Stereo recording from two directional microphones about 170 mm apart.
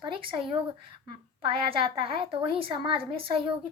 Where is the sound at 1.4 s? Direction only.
30° right (ahead or behind).